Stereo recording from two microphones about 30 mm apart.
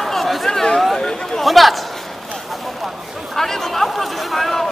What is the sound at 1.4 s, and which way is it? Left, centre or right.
Speech, centre.